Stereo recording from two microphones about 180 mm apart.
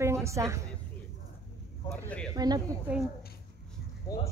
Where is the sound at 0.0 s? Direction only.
15° right (ahead or behind).